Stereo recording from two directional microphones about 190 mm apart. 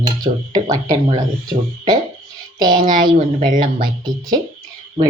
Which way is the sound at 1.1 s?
20° right (ahead or behind).